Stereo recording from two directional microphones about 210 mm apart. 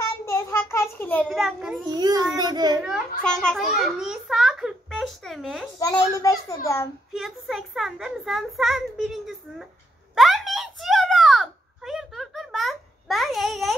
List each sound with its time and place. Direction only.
0.2 s a sound: 10° left (ahead or behind)
1.3 s a child's voice: centre (ahead or behind)
1.9 s a child's voice: 20° right (ahead or behind)
2.8 s a child's voice: centre (ahead or behind)
5.8 s a child's voice: 15° left (ahead or behind)
7.2 s a child's voice: centre (ahead or behind)
10.1 s a sound: centre (ahead or behind)